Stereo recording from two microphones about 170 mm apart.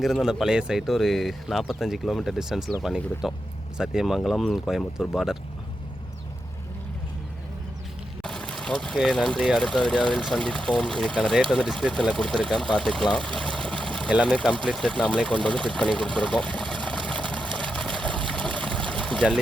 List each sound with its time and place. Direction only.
0.0 s speech: centre (ahead or behind)
8.2 s speech: 5° left (ahead or behind)
16.8 s a sound: 5° left (ahead or behind)